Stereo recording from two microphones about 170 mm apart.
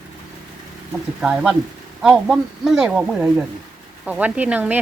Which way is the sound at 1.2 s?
5° right (ahead or behind).